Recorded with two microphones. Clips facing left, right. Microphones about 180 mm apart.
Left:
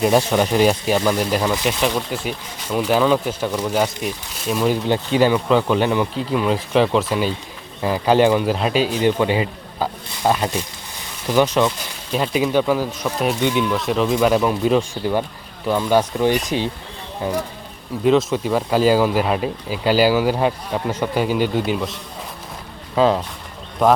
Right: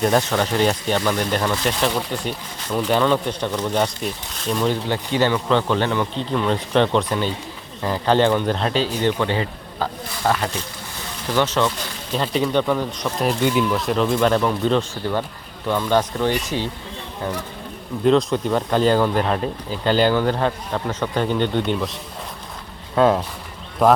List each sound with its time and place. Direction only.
0.0 s speech: 10° left (ahead or behind)
23.0 s speech: centre (ahead or behind)